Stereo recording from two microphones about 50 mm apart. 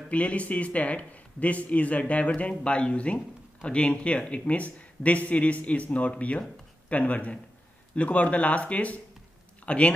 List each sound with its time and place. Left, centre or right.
0.1 s speech: left